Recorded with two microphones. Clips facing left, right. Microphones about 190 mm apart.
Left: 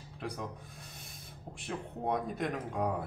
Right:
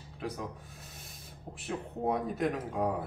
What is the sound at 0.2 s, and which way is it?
Speech, centre (ahead or behind).